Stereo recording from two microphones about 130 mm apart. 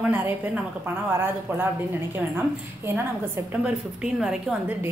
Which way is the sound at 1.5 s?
20° right (ahead or behind).